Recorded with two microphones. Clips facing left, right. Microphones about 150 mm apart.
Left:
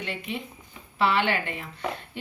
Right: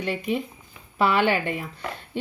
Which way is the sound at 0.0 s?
40° right (ahead or behind).